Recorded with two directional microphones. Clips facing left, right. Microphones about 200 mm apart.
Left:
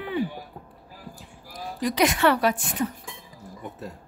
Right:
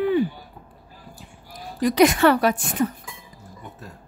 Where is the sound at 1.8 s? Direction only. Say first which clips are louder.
Right 6 dB; 50° right (ahead or behind).